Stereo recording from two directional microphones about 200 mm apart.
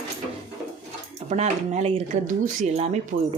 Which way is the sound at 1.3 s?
35° right (ahead or behind).